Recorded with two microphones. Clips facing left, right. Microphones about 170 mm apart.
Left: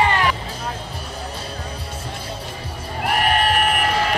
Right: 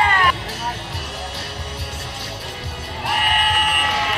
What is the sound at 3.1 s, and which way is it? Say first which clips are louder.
Music: left 3 dB; 40° left (ahead or behind).